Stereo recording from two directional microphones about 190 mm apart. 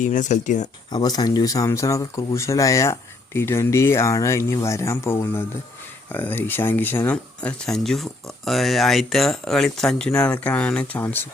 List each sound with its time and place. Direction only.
0.0 s speech: 40° left (ahead or behind)
0.9 s speech: 20° left (ahead or behind)